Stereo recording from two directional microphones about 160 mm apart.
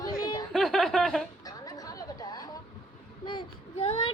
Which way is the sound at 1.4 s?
20° left (ahead or behind).